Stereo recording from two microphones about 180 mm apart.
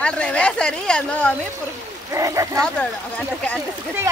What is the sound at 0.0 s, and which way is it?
Speech, 5° left (ahead or behind).